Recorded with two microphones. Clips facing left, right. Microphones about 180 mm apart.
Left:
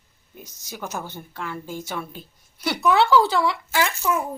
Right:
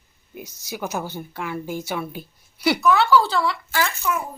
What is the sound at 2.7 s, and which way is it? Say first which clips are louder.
Speech: left 1 dB; 25° left (ahead or behind).